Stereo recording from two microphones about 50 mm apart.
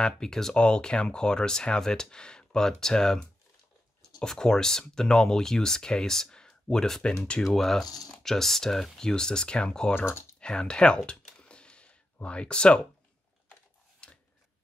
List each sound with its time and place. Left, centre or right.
0.0 s speech: centre
9.9 s speech: left
10.4 s speech: centre
11.3 s a sound: centre
14.0 s scissors: centre